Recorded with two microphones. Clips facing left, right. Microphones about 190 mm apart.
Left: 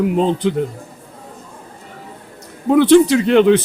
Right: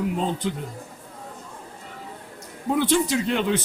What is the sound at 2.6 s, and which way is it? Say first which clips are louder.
Speech: left 12 dB; 75° left (ahead or behind).